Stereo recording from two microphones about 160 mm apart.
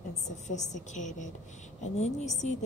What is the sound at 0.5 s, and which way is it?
A woman's voice, 50° left (ahead or behind).